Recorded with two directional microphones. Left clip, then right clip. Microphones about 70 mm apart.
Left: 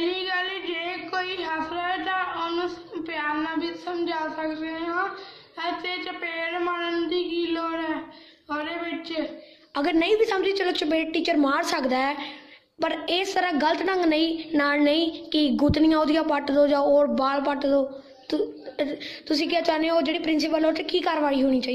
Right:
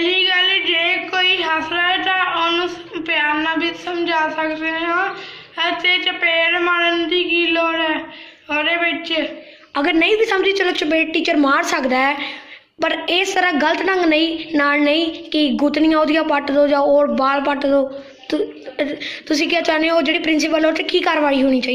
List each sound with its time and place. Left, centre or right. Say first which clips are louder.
0.0 s a sound: right 11 dB; left; by 5.0 s centre
5.6 s a woman's voice: right 12 dB; left
9.8 s a woman's voice: right 6 dB; left